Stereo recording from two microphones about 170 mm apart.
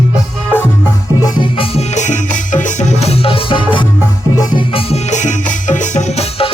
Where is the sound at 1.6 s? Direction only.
40° left (ahead or behind).